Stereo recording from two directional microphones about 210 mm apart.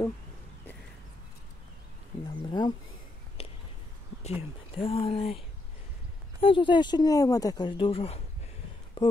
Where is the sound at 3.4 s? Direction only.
30° left (ahead or behind).